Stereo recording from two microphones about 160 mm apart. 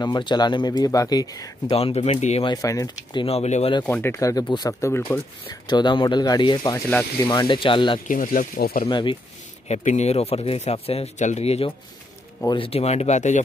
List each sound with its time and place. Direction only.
0.0 s speech: 25° left (ahead or behind)
1.8 s speech: 40° left (ahead or behind)
2.4 s speech: 20° left (ahead or behind); by 3.7 s 45° left (ahead or behind)
3.8 s speech: 10° left (ahead or behind)
5.7 s speech: 30° left (ahead or behind)
6.9 s speech: 10° left (ahead or behind)
7.2 s speech: 30° left (ahead or behind)
8.1 s speech: 60° left (ahead or behind)
8.8 s speech: 30° left (ahead or behind)
9.7 s speech: 45° left (ahead or behind)